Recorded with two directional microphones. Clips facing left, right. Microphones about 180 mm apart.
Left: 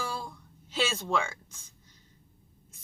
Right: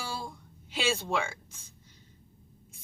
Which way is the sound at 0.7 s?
10° right (ahead or behind).